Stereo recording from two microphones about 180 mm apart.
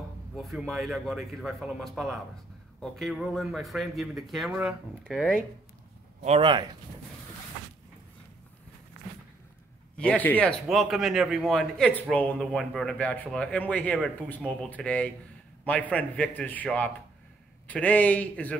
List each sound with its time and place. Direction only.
0.4 s speech: centre (ahead or behind)
6.2 s speech: 30° right (ahead or behind)
9.9 s a man's voice: 5° left (ahead or behind)